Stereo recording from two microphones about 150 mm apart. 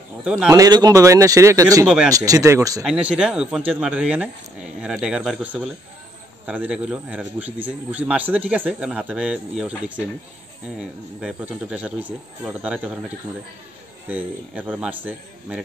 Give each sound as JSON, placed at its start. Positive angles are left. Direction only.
{"t": 0.2, "sound": "speech", "side_deg": -5}
{"t": 0.5, "sound": "speech", "side_deg": -25}
{"t": 2.8, "sound": "a man's voice", "side_deg": -5}
{"t": 14.0, "sound": "a man's voice", "side_deg": -10}